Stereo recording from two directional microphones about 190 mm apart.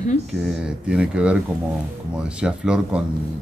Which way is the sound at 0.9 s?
5° right (ahead or behind).